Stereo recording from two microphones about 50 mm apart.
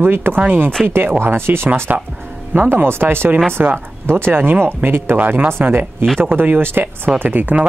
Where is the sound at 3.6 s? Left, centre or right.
Right.